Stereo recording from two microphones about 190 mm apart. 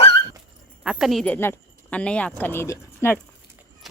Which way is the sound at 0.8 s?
Centre (ahead or behind).